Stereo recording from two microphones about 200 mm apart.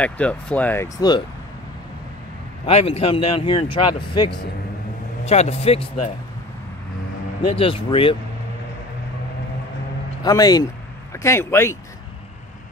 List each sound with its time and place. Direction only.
0.0 s speech: 5° left (ahead or behind)
2.6 s a man's voice: 30° left (ahead or behind)
7.4 s a man's voice: 25° left (ahead or behind)
10.2 s a man's voice: 20° left (ahead or behind)